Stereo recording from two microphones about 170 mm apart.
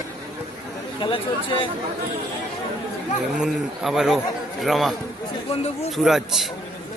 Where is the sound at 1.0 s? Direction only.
30° left (ahead or behind).